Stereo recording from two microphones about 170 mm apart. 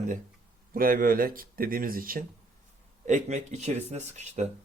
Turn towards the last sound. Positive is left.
turn(degrees=-40)  # may be behind; listen again after turning